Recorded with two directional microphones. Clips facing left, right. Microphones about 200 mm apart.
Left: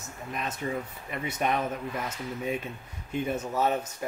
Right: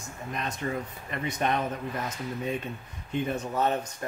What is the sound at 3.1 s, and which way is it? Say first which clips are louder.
Speech: even; 10° left (ahead or behind).